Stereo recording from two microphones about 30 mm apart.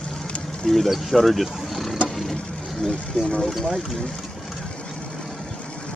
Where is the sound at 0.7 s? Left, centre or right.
Centre.